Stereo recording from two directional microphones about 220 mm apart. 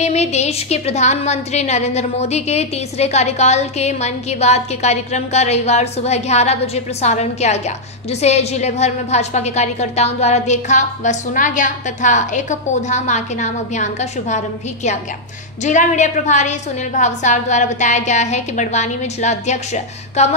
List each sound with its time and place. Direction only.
0.0 s a woman's voice: 30° left (ahead or behind)